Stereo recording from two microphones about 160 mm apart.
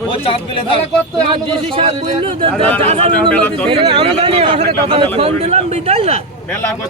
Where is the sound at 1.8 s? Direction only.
35° right (ahead or behind).